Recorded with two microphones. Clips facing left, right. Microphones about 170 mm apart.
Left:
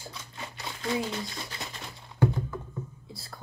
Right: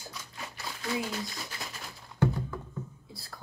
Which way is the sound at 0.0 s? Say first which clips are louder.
Left 2 dB; 30° left (ahead or behind).